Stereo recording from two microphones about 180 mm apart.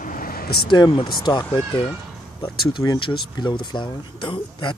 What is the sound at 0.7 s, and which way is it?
Speech, 25° left (ahead or behind).